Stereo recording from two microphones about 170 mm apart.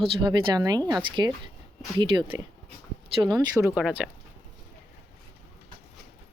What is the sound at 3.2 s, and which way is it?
Speech, 20° right (ahead or behind).